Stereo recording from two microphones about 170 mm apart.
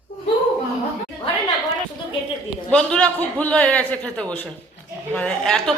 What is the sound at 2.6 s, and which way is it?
Speech, 5° left (ahead or behind).